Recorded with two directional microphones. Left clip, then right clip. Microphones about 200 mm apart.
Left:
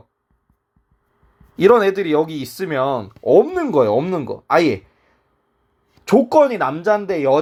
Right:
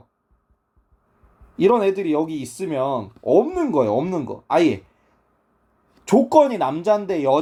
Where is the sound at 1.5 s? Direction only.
65° left (ahead or behind).